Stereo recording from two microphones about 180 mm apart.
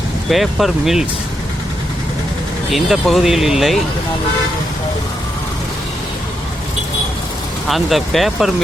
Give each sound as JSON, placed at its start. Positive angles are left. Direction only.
{"t": 0.3, "sound": "speech", "side_deg": 0}
{"t": 2.6, "sound": "speech", "side_deg": 0}
{"t": 7.7, "sound": "speech", "side_deg": 0}